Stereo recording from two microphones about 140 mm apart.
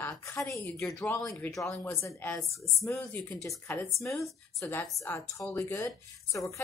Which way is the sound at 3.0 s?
5° left (ahead or behind).